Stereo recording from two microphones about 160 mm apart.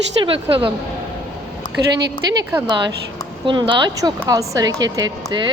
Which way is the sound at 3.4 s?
30° right (ahead or behind).